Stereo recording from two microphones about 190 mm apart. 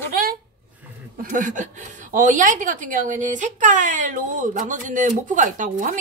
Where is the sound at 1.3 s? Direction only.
40° right (ahead or behind).